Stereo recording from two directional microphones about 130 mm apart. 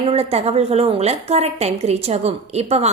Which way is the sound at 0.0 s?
50° right (ahead or behind).